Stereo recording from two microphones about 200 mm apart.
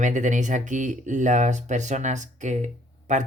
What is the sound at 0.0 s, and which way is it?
Speech, 40° right (ahead or behind).